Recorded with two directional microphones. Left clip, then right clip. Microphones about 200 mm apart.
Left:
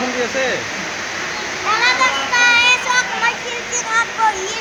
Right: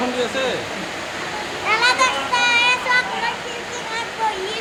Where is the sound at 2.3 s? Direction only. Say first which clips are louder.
Left 5 dB; centre (ahead or behind).